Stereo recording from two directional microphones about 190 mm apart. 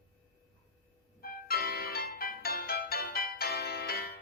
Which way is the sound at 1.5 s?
55° left (ahead or behind).